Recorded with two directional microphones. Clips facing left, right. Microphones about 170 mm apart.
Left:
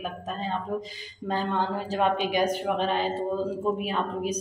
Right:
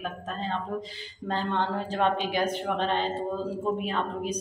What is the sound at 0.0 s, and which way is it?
A woman's voice, 10° left (ahead or behind).